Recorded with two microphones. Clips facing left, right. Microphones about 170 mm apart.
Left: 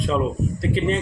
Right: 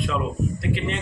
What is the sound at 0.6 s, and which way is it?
Speech, 35° left (ahead or behind).